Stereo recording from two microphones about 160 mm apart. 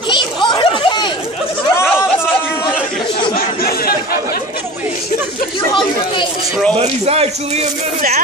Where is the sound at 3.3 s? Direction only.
70° left (ahead or behind).